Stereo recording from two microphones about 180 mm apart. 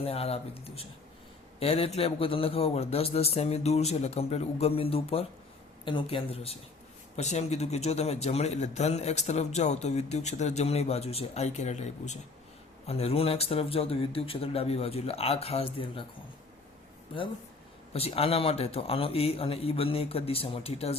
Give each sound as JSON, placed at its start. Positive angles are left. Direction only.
{"t": 0.0, "sound": "speech", "side_deg": 35}
{"t": 17.9, "sound": "speech", "side_deg": 35}